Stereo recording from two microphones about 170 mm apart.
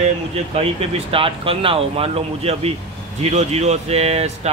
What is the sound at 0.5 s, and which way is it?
Speech, 35° right (ahead or behind).